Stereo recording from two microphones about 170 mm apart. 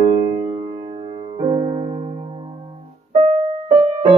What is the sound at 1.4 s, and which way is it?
Music, 35° right (ahead or behind).